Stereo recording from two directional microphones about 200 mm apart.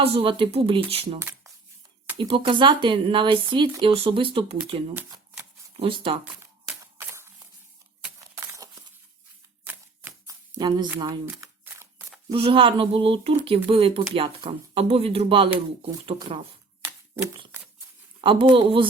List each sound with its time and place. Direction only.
0.0 s speech: 30° right (ahead or behind)
4.9 s shuffling cards: 10° right (ahead or behind)
5.8 s speech: 25° right (ahead or behind)
8.5 s a sound: 15° right (ahead or behind)
12.3 s speech: 25° right (ahead or behind)
18.2 s speech: 25° right (ahead or behind)